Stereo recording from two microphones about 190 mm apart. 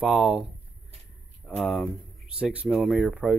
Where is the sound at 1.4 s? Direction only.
Centre (ahead or behind).